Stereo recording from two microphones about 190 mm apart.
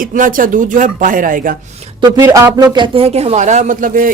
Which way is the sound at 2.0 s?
20° right (ahead or behind).